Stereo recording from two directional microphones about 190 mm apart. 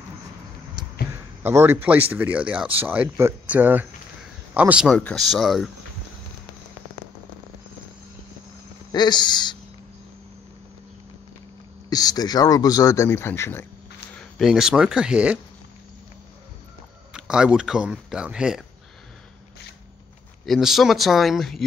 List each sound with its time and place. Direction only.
1.1 s a man's voice: 15° right (ahead or behind)
8.9 s a man's voice: 20° left (ahead or behind)
11.9 s a man's voice: 20° left (ahead or behind)
14.1 s speech: centre (ahead or behind)
17.1 s speech: 5° right (ahead or behind)
20.4 s speech: centre (ahead or behind)